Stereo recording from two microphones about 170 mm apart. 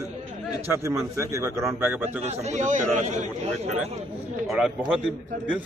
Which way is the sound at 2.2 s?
40° right (ahead or behind).